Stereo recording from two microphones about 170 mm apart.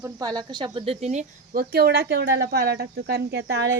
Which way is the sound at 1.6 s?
65° right (ahead or behind).